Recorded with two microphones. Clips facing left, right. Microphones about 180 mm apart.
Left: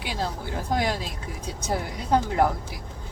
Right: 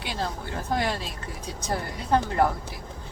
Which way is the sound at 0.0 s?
10° left (ahead or behind).